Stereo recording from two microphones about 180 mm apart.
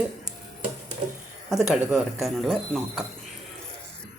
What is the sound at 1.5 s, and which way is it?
Speech, centre (ahead or behind).